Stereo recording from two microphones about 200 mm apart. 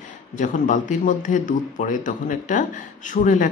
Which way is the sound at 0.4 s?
40° left (ahead or behind).